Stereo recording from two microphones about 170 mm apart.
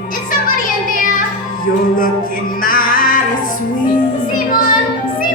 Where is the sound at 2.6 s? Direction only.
55° left (ahead or behind).